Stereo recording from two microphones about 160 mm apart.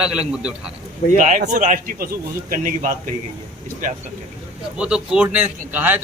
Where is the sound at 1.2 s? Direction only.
55° right (ahead or behind).